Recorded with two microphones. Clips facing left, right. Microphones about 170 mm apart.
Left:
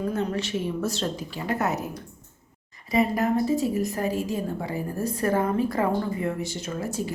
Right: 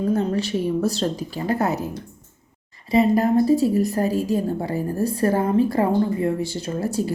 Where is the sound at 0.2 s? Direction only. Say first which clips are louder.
Right 5 dB; 35° right (ahead or behind).